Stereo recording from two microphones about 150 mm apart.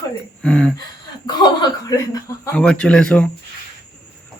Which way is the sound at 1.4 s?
25° left (ahead or behind).